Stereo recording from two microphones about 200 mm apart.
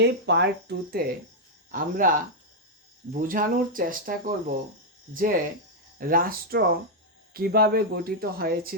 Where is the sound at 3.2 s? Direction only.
45° right (ahead or behind).